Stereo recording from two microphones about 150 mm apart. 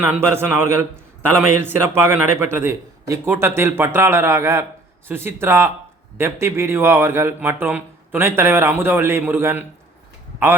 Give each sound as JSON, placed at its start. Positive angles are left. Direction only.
{"t": 0.0, "sound": "speech", "side_deg": -10}